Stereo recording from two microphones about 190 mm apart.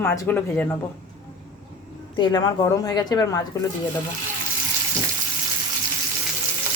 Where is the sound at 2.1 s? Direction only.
25° left (ahead or behind).